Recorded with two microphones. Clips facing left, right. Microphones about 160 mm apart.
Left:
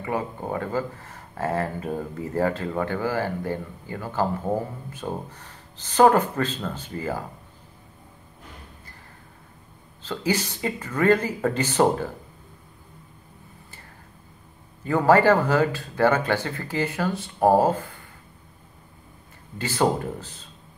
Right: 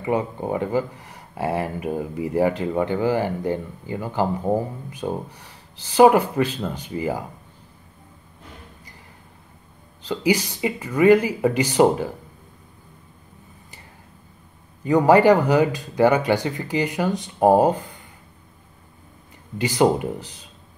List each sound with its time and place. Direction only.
0.0 s speech: 20° right (ahead or behind)
10.0 s speech: 15° right (ahead or behind)
14.9 s speech: 15° right (ahead or behind)
19.6 s speech: 15° right (ahead or behind)